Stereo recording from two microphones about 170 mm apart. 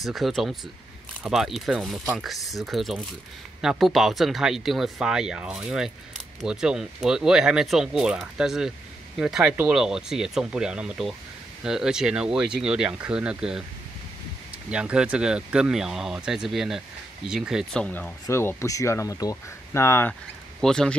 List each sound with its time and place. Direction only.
0.0 s speech: centre (ahead or behind)
14.7 s speech: 5° right (ahead or behind)
17.8 s speech: 10° left (ahead or behind)
20.6 s speech: 5° left (ahead or behind)